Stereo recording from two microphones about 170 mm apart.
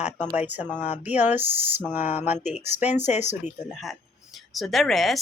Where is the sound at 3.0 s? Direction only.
45° left (ahead or behind).